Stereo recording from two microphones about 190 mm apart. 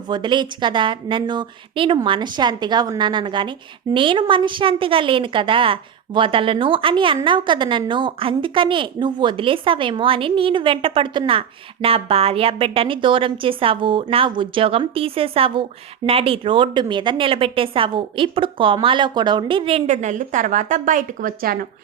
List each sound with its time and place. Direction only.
0.1 s a woman's voice: 25° right (ahead or behind); by 21.7 s 50° right (ahead or behind)